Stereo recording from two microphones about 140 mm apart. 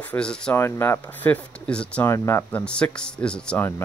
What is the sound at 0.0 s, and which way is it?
Speech, 10° left (ahead or behind).